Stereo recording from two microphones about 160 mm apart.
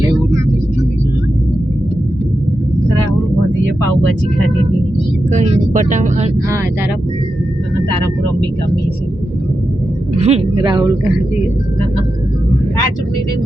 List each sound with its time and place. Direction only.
5.3 s speech: 50° right (ahead or behind)
10.2 s speech: 40° right (ahead or behind)